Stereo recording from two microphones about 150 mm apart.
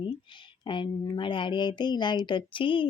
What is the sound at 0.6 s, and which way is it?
A woman's voice, 30° left (ahead or behind).